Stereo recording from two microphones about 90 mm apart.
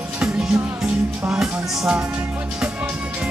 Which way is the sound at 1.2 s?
10° right (ahead or behind).